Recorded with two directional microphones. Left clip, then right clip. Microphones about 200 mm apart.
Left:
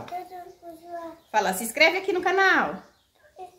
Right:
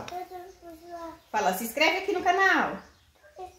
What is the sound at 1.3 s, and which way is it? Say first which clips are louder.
Speech: left 2 dB; 30° left (ahead or behind).